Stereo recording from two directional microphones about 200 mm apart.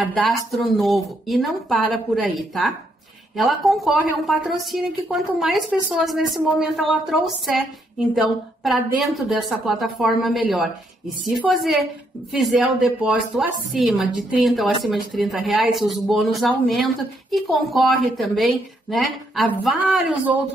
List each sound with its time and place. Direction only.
0.1 s a woman's voice: 5° left (ahead or behind)